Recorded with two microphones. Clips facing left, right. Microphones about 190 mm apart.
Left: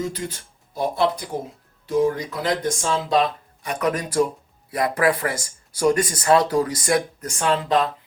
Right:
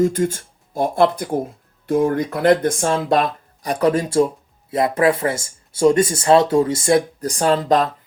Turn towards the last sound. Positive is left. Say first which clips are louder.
# right 4 dB
turn(degrees=-40)  # may be behind; listen again after turning